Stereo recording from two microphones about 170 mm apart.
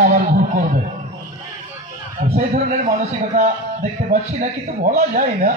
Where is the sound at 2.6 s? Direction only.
40° right (ahead or behind).